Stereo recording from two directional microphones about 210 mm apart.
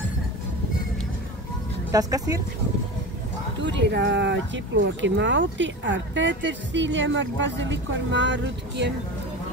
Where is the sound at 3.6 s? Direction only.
55° right (ahead or behind).